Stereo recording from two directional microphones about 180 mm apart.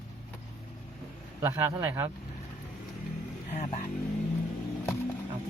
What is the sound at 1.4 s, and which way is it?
Speech, 15° right (ahead or behind).